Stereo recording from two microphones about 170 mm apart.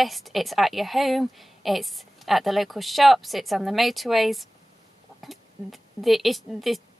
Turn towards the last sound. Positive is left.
turn(degrees=0)  # may be behind; listen again after turning